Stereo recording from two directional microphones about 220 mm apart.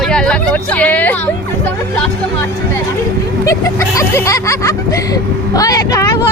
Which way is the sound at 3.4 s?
15° left (ahead or behind).